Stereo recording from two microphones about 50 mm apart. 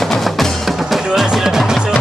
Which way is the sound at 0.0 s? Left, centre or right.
Centre.